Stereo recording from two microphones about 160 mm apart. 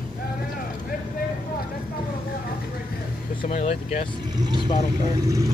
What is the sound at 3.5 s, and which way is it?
Speech, 45° left (ahead or behind).